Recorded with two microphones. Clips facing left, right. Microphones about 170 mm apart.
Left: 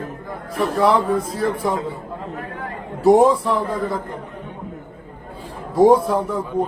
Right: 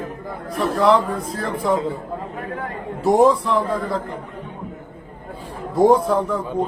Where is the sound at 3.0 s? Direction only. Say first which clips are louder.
Left 2 dB; centre (ahead or behind).